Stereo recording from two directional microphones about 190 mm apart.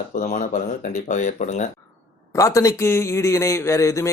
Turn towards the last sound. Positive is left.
turn(degrees=15)  # may be behind; listen again after turning